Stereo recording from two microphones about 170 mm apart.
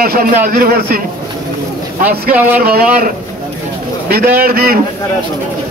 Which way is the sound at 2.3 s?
10° right (ahead or behind).